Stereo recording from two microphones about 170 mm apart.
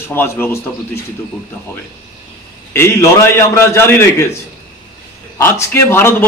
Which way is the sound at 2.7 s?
15° left (ahead or behind).